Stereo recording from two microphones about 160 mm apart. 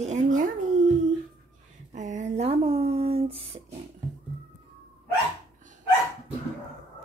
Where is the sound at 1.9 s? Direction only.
50° right (ahead or behind).